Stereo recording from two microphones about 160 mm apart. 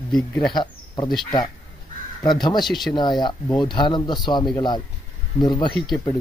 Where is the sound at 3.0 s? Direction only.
30° left (ahead or behind).